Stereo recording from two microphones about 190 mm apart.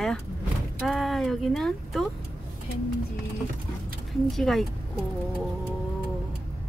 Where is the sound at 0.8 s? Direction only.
Centre (ahead or behind).